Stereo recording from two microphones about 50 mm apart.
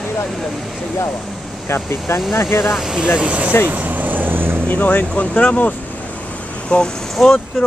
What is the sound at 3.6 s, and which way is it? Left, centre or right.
Vehicle, right.